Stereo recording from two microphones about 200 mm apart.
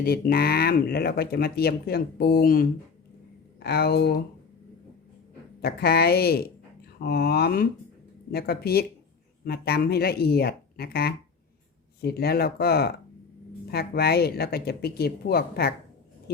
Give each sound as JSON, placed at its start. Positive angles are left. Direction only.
{"t": 0.0, "sound": "speech", "side_deg": 50}
{"t": 5.6, "sound": "speech", "side_deg": 50}